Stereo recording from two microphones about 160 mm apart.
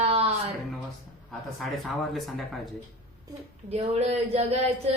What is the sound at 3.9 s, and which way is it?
Speech, 40° right (ahead or behind).